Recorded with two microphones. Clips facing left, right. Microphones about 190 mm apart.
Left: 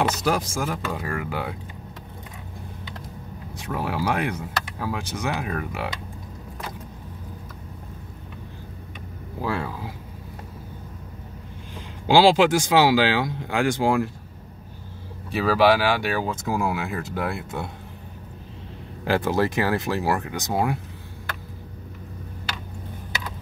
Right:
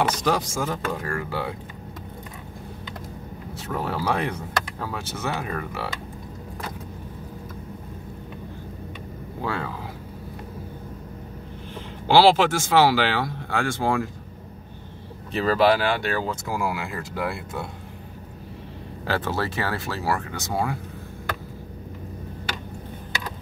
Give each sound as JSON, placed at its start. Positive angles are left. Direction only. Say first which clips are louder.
{"t": 0.0, "sound": "speech", "louder": "even", "side_deg": 10}
{"t": 3.5, "sound": "speech", "louder": "left 1 dB", "side_deg": 10}
{"t": 9.4, "sound": "speech", "louder": "left 2 dB", "side_deg": 5}
{"t": 12.1, "sound": "speech", "louder": "left 1 dB", "side_deg": 15}
{"t": 15.3, "sound": "speech", "louder": "left 1 dB", "side_deg": 10}
{"t": 19.0, "sound": "speech", "louder": "left 4 dB", "side_deg": 15}